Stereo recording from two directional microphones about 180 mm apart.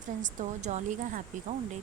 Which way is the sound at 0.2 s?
40° right (ahead or behind).